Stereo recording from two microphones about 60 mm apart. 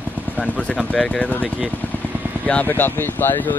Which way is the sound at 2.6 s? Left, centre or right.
Left.